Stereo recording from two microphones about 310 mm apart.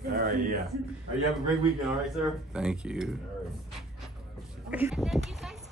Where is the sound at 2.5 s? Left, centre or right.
Centre.